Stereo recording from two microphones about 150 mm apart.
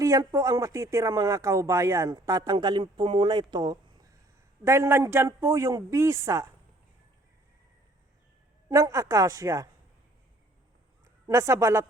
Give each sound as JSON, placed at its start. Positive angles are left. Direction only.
{"t": 0.0, "sound": "speech", "side_deg": -20}
{"t": 8.7, "sound": "speech", "side_deg": -20}
{"t": 11.3, "sound": "speech", "side_deg": -20}